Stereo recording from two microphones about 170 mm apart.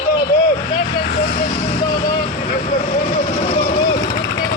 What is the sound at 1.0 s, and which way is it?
Vehicle, 75° left (ahead or behind).